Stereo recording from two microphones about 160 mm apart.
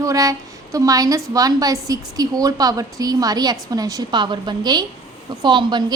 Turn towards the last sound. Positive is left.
turn(degrees=-30)  # may be behind; listen again after turning